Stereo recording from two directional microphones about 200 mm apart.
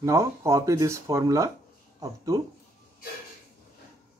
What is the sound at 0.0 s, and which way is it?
Speech, 15° right (ahead or behind).